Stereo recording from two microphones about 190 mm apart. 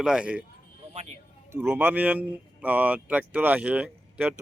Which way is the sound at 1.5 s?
10° right (ahead or behind).